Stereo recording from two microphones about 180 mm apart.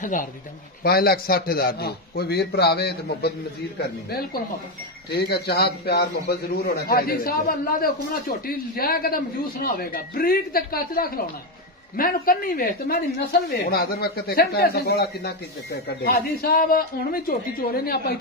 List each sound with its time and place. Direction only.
0.0 s a man's voice: 45° left (ahead or behind); by 3.3 s 65° left (ahead or behind)
5.1 s a man's voice: 65° left (ahead or behind)